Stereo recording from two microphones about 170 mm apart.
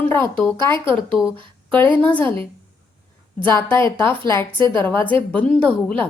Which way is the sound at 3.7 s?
15° left (ahead or behind).